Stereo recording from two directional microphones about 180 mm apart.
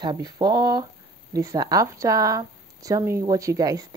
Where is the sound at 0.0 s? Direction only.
25° right (ahead or behind).